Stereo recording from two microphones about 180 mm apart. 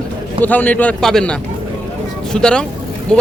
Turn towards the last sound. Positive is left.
turn(degrees=5)  # may be behind; listen again after turning